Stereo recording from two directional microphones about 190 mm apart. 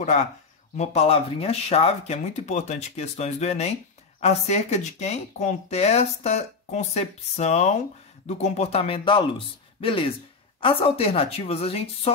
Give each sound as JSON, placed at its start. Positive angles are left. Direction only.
{"t": 0.7, "sound": "speech", "side_deg": 30}